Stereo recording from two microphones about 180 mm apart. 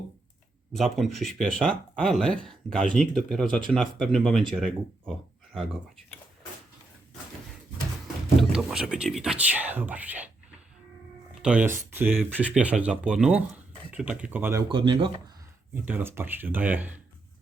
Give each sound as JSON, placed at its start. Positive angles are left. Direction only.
{"t": 0.7, "sound": "speech", "side_deg": 0}
{"t": 8.4, "sound": "speech", "side_deg": -5}
{"t": 11.4, "sound": "speech", "side_deg": -10}
{"t": 14.7, "sound": "speech", "side_deg": -30}
{"t": 15.7, "sound": "speech", "side_deg": -10}